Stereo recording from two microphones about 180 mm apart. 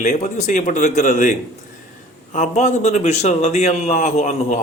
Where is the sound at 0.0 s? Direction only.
40° left (ahead or behind).